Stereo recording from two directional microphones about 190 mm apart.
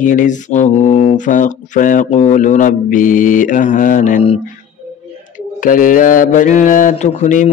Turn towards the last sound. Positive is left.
turn(degrees=40)  # may be behind; listen again after turning